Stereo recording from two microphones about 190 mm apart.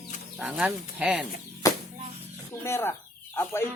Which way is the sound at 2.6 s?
15° left (ahead or behind).